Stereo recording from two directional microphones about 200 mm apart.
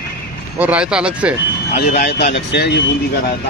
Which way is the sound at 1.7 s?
55° left (ahead or behind).